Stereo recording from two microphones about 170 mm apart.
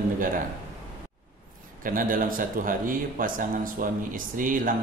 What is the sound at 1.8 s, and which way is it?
Speech, 55° right (ahead or behind).